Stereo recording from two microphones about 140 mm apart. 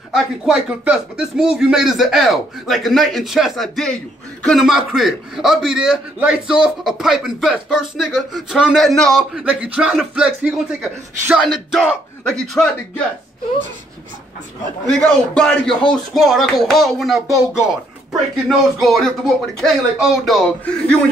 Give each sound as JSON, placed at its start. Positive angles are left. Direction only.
{"t": 0.1, "sound": "a man's voice", "side_deg": -5}
{"t": 14.9, "sound": "speech", "side_deg": 5}
{"t": 18.8, "sound": "speech", "side_deg": 0}